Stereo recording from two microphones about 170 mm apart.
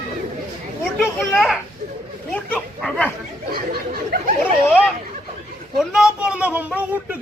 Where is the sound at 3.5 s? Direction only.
60° right (ahead or behind).